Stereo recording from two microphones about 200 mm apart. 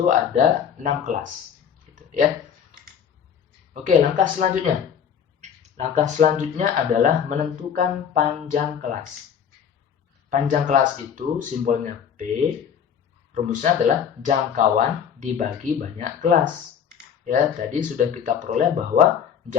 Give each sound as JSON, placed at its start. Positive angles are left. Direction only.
{"t": 0.0, "sound": "speech", "side_deg": -40}
{"t": 3.8, "sound": "speech", "side_deg": -40}
{"t": 10.2, "sound": "speech", "side_deg": -40}
{"t": 13.3, "sound": "speech", "side_deg": -40}